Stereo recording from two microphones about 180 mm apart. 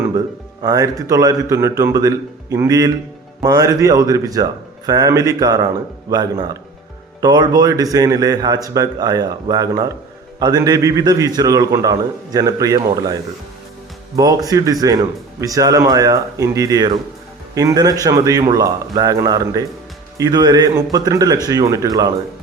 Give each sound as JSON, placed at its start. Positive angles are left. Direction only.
{"t": 0.6, "sound": "a man's voice", "side_deg": -20}
{"t": 14.2, "sound": "a man's voice", "side_deg": -20}